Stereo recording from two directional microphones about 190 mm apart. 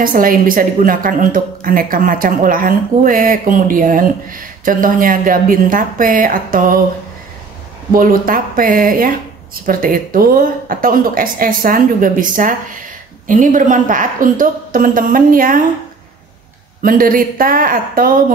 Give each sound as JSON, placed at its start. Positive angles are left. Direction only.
{"t": 0.0, "sound": "a woman's voice", "side_deg": -45}
{"t": 7.9, "sound": "a woman's voice", "side_deg": -45}
{"t": 16.8, "sound": "a woman's voice", "side_deg": -50}